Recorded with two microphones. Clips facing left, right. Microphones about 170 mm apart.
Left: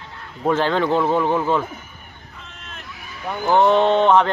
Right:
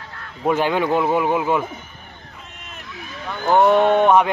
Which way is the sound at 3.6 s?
10° right (ahead or behind).